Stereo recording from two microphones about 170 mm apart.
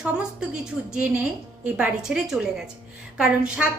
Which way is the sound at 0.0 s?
5° right (ahead or behind).